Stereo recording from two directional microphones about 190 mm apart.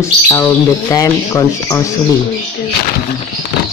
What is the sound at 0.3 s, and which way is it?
Speech, 15° left (ahead or behind).